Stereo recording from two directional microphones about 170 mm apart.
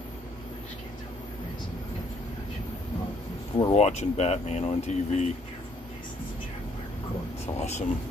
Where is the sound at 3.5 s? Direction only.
35° left (ahead or behind).